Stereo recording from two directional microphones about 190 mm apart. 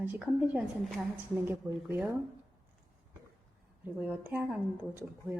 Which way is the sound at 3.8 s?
10° right (ahead or behind).